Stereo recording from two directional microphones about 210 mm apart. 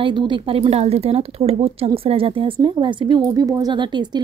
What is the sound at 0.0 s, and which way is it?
A woman's voice, 25° right (ahead or behind).